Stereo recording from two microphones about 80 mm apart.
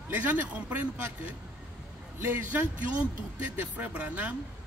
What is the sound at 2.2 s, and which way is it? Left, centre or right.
A man's voice, right.